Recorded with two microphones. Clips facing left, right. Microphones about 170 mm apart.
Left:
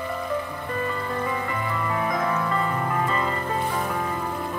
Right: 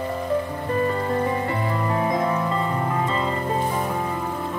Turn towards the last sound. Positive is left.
turn(degrees=-20)  # may be behind; listen again after turning